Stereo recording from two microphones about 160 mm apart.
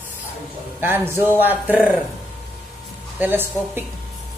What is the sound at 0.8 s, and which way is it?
A man's voice, 15° right (ahead or behind).